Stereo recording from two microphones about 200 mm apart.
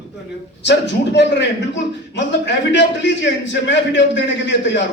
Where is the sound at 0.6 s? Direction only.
60° left (ahead or behind).